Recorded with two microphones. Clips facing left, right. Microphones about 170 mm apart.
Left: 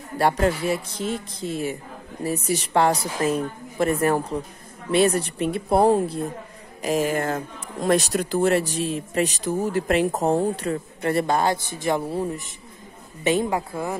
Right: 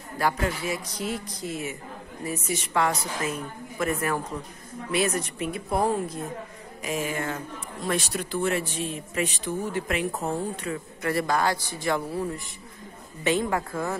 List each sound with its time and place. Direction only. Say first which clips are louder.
0.2 s a woman's voice: left 6 dB; 35° left (ahead or behind); by 13.9 s 15° left (ahead or behind)